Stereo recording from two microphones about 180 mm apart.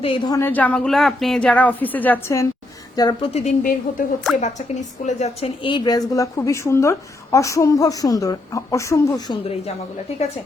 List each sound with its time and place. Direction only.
0.0 s a woman's voice: 30° left (ahead or behind)
0.3 s speech: 10° left (ahead or behind)
3.3 s a woman's voice: 45° left (ahead or behind)